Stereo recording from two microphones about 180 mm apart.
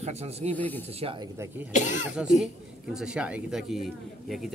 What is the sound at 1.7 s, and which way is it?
Speech, 45° left (ahead or behind).